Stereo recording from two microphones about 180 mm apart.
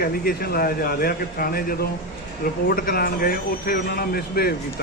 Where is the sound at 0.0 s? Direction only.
55° left (ahead or behind).